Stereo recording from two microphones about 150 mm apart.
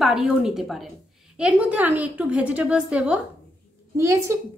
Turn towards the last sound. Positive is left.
turn(degrees=-20)  # may be behind; listen again after turning